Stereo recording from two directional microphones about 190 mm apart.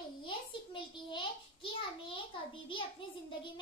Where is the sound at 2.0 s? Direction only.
25° left (ahead or behind).